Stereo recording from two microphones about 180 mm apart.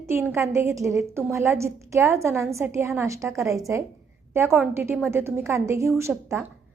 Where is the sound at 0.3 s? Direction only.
15° right (ahead or behind).